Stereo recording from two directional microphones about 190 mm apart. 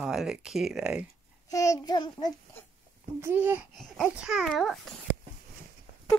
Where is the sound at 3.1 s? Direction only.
10° right (ahead or behind).